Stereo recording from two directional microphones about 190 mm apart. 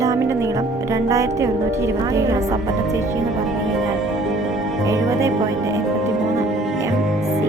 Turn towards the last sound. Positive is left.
turn(degrees=-15)  # may be behind; listen again after turning